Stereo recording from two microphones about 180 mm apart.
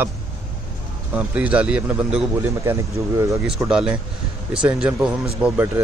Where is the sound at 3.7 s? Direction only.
5° right (ahead or behind).